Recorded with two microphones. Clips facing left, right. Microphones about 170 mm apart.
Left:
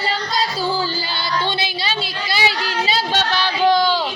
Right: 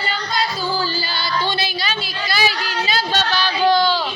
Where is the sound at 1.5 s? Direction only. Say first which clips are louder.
Even; 25° left (ahead or behind).